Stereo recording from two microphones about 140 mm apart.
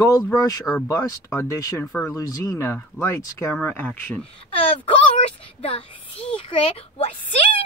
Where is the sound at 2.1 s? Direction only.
25° left (ahead or behind).